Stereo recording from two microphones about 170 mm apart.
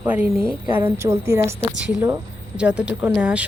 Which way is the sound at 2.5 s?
5° right (ahead or behind).